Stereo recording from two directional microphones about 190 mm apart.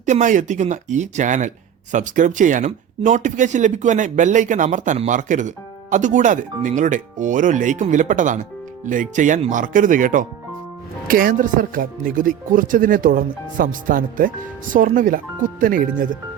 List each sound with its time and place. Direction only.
0.0 s speech: 40° right (ahead or behind)